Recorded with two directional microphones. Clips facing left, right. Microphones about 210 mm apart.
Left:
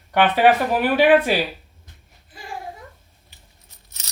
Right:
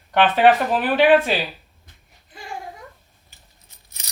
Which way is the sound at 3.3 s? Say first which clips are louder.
Left 1 dB; 45° right (ahead or behind).